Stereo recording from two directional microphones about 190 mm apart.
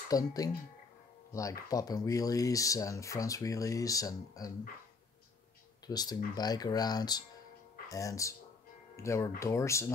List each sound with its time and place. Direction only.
0.1 s speech: 20° left (ahead or behind)
5.9 s speech: 20° left (ahead or behind)